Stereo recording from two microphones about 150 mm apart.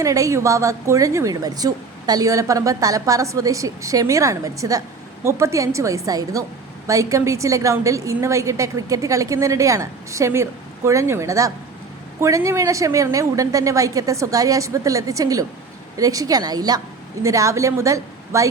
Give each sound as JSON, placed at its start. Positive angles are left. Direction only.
{"t": 0.0, "sound": "a woman's voice", "side_deg": -20}